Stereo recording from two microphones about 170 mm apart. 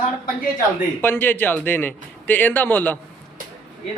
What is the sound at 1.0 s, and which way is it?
A man's voice, 10° left (ahead or behind).